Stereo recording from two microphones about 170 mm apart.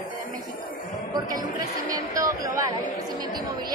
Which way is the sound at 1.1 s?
25° right (ahead or behind).